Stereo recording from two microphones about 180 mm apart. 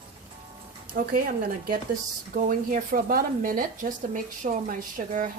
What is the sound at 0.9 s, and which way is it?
Speech, 50° right (ahead or behind).